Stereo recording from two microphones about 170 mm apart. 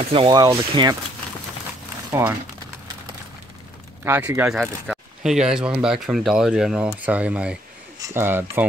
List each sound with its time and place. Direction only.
0.0 s speech: 30° right (ahead or behind)
2.0 s speech: 15° right (ahead or behind)
4.0 s speech: 15° right (ahead or behind)
4.6 s speech: centre (ahead or behind)